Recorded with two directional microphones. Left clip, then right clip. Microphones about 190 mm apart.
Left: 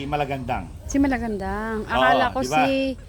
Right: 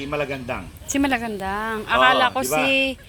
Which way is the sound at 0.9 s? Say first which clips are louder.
Right 1 dB; 15° left (ahead or behind).